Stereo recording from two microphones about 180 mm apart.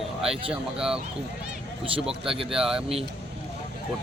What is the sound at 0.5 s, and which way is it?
Speech, 5° right (ahead or behind).